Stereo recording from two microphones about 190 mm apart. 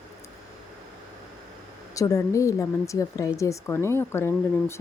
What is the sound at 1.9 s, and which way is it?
A woman's voice, 15° left (ahead or behind).